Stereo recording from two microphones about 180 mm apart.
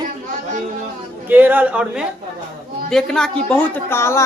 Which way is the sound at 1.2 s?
10° right (ahead or behind).